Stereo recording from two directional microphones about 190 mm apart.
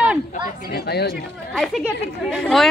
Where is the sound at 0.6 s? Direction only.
55° left (ahead or behind).